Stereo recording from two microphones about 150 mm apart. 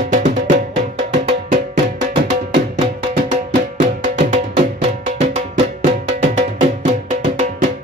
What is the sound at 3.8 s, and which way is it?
Music, 55° right (ahead or behind).